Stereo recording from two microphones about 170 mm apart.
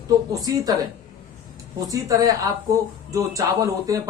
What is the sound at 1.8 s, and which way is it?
Speech, 20° right (ahead or behind).